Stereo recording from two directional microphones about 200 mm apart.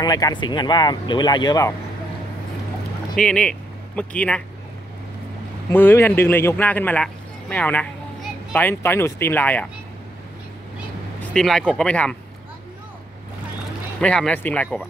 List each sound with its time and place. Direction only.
0.0 s speech: 20° left (ahead or behind)
3.2 s speech: 5° left (ahead or behind)
5.7 s speech: 10° left (ahead or behind)
11.3 s speech: 5° left (ahead or behind)
14.0 s speech: 5° left (ahead or behind)